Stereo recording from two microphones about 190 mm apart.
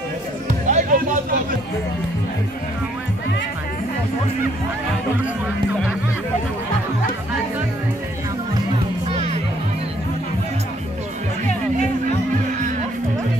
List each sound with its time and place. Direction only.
0.7 s music: 40° right (ahead or behind)